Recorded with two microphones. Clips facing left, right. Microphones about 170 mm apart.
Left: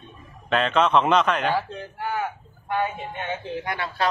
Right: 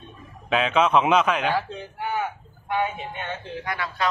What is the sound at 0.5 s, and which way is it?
A man's voice, 5° right (ahead or behind).